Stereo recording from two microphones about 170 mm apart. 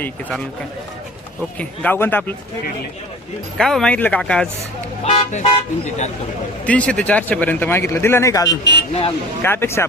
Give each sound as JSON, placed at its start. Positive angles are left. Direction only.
{"t": 0.0, "sound": "speech", "side_deg": 10}
{"t": 1.5, "sound": "speech", "side_deg": 10}
{"t": 3.6, "sound": "speech", "side_deg": 5}
{"t": 5.0, "sound": "speech", "side_deg": 40}
{"t": 6.7, "sound": "speech", "side_deg": 5}
{"t": 8.9, "sound": "speech", "side_deg": 35}
{"t": 9.4, "sound": "speech", "side_deg": 15}